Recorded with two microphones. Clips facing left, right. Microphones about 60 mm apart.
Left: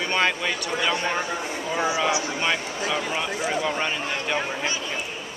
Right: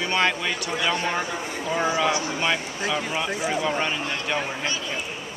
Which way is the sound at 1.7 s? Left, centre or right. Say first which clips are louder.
Right 1 dB; centre.